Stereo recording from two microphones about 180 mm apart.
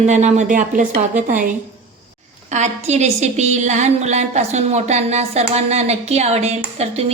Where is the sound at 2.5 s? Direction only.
40° right (ahead or behind).